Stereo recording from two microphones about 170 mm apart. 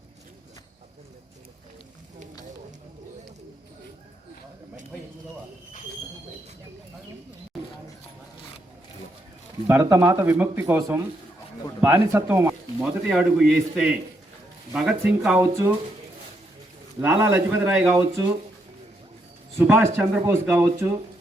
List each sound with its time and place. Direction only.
9.6 s a man's voice: 15° right (ahead or behind)
15.4 s speech: 15° right (ahead or behind)
17.0 s speech: 15° right (ahead or behind)
19.5 s speech: 15° right (ahead or behind)